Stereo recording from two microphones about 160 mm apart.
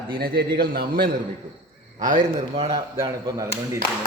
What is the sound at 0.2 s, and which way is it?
Speech, 70° right (ahead or behind).